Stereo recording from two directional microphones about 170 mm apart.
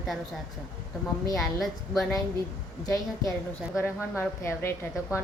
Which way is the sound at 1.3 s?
Centre (ahead or behind).